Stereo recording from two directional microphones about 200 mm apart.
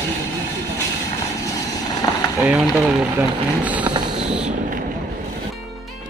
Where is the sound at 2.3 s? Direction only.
5° right (ahead or behind).